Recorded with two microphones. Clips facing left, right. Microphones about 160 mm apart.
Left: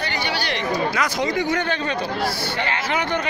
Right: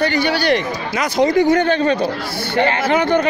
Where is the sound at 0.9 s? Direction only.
20° right (ahead or behind).